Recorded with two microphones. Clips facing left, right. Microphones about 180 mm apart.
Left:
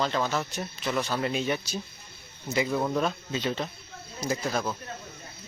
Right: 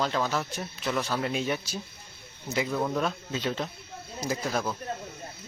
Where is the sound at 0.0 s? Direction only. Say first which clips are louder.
Even; centre (ahead or behind).